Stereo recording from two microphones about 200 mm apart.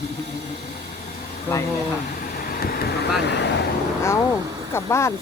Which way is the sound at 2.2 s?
45° left (ahead or behind).